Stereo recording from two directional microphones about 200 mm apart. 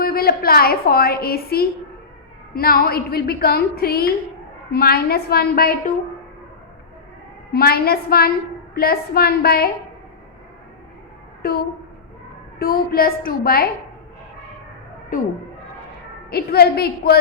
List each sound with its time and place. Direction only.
0.0 s a woman's voice: 50° left (ahead or behind)
7.5 s a woman's voice: 50° left (ahead or behind)
11.4 s a woman's voice: 50° left (ahead or behind)
16.3 s a woman's voice: 50° left (ahead or behind)